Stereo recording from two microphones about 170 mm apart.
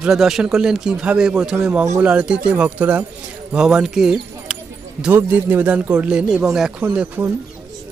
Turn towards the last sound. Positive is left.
turn(degrees=-10)  # may be behind; listen again after turning